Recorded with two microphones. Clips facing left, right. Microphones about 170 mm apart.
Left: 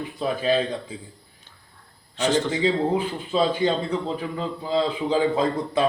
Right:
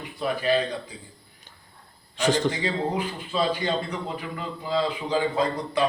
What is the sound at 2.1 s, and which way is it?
Speech, 10° right (ahead or behind).